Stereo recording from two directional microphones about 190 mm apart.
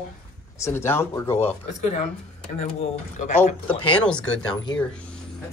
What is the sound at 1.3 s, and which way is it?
Speech, 35° left (ahead or behind).